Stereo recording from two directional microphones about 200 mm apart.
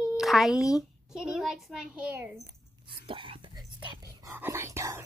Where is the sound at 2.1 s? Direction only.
10° right (ahead or behind).